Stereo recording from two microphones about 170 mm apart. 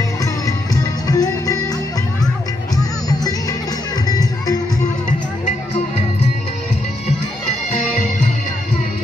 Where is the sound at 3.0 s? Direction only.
20° left (ahead or behind).